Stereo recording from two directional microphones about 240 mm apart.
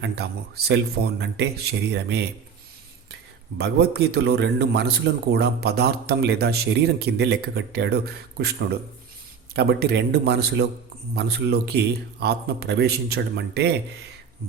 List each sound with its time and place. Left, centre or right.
0.0 s a man's voice: right
3.6 s a man's voice: right